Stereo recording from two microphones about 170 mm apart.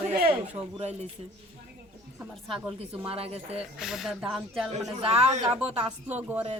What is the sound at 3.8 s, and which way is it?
Speech, centre (ahead or behind).